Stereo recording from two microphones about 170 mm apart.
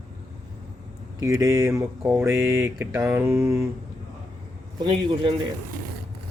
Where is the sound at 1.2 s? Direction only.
20° right (ahead or behind).